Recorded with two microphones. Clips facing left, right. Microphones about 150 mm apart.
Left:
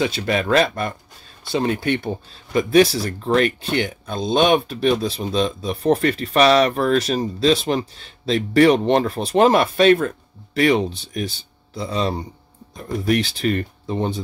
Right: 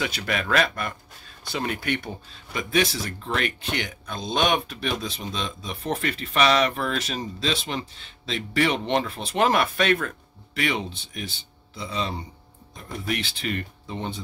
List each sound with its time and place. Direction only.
0.0 s speech: 30° left (ahead or behind)
10.6 s speech: 40° left (ahead or behind)